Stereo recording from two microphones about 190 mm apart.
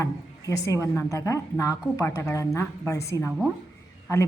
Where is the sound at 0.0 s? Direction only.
15° left (ahead or behind).